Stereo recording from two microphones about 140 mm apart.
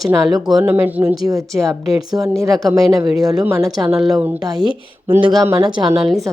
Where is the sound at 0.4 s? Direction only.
5° right (ahead or behind).